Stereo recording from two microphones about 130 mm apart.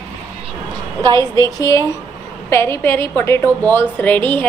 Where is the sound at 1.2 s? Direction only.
25° left (ahead or behind).